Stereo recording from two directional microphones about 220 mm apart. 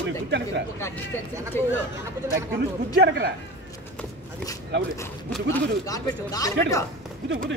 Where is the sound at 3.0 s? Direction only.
50° right (ahead or behind).